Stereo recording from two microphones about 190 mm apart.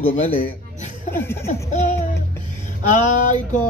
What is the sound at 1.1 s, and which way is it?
Speech, 10° left (ahead or behind).